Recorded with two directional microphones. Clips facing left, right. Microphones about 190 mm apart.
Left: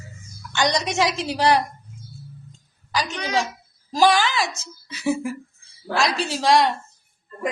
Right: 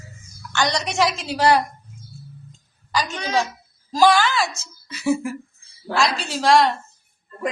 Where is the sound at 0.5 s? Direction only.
15° left (ahead or behind).